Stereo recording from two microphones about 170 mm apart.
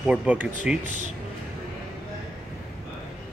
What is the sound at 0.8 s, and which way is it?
Speech, 50° right (ahead or behind).